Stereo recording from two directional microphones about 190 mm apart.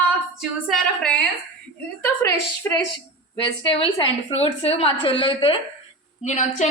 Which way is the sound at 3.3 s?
25° left (ahead or behind).